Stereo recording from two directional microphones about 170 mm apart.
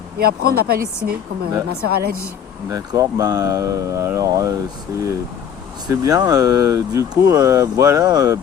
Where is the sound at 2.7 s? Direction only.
20° right (ahead or behind).